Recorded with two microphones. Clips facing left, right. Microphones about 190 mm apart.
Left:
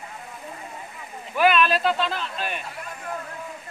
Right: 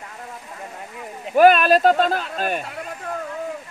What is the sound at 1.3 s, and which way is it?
Speech, 45° right (ahead or behind).